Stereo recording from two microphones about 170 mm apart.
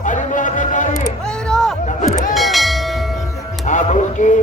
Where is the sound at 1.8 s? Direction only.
45° left (ahead or behind).